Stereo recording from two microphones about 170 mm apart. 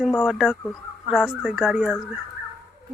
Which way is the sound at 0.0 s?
Centre (ahead or behind).